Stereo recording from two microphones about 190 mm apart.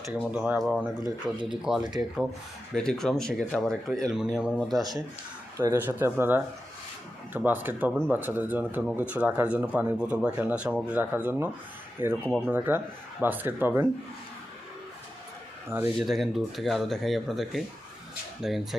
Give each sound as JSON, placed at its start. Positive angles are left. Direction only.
{"t": 0.3, "sound": "speech", "side_deg": -10}
{"t": 4.8, "sound": "speech", "side_deg": -20}
{"t": 16.0, "sound": "speech", "side_deg": 0}